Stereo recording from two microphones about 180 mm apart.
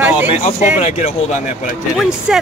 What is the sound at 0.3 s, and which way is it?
Speech, 40° left (ahead or behind).